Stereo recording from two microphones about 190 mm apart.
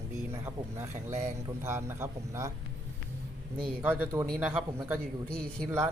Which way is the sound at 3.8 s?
10° right (ahead or behind).